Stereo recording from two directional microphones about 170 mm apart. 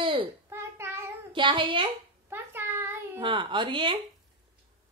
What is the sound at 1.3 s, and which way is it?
Speech, 30° right (ahead or behind).